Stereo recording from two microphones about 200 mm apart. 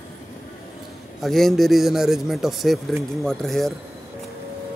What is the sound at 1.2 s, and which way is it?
A man's voice, centre (ahead or behind).